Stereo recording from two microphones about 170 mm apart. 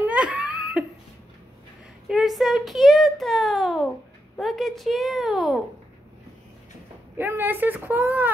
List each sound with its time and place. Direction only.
0.0 s laughter: 10° right (ahead or behind)
2.0 s speech: centre (ahead or behind)
7.2 s speech: 10° right (ahead or behind)